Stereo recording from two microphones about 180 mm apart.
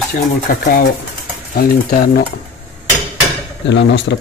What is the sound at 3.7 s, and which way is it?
Speech, 80° left.